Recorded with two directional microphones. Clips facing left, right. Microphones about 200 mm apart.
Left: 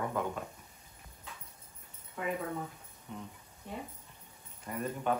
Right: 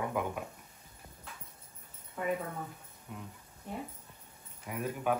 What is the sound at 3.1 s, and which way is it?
Speech, 5° right (ahead or behind).